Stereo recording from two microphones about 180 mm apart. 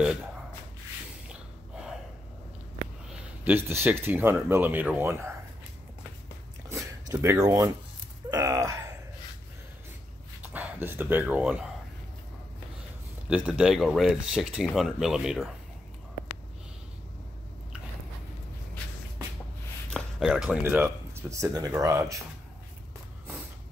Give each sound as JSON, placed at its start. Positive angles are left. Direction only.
{"t": 1.3, "sound": "gasp", "side_deg": -5}
{"t": 3.1, "sound": "speech", "side_deg": -10}
{"t": 6.7, "sound": "a sound", "side_deg": -15}
{"t": 8.3, "sound": "groan", "side_deg": -20}
{"t": 10.4, "sound": "speech", "side_deg": -10}
{"t": 13.3, "sound": "speech", "side_deg": -5}
{"t": 19.9, "sound": "speech", "side_deg": -5}